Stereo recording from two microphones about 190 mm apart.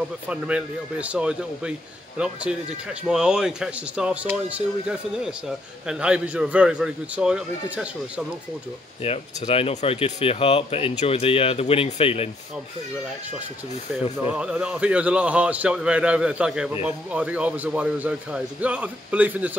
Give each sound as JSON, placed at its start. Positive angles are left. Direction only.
{"t": 0.3, "sound": "a man's voice", "side_deg": -5}
{"t": 9.0, "sound": "speech", "side_deg": 30}
{"t": 14.3, "sound": "a man's voice", "side_deg": -5}